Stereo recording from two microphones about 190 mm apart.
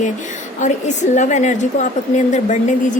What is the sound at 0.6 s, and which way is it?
A woman's voice, 40° left (ahead or behind).